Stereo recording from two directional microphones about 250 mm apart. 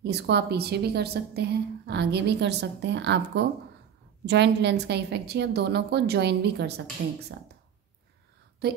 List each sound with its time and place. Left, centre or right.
0.0 s a woman's voice: right